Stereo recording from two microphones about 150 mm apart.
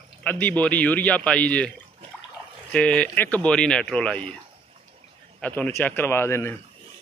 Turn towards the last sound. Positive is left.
turn(degrees=15)  # may be behind; listen again after turning